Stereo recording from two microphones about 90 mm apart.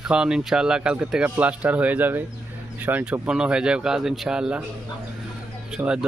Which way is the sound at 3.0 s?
10° right (ahead or behind).